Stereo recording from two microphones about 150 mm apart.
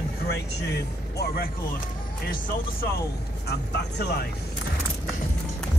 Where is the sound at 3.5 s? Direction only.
90° left.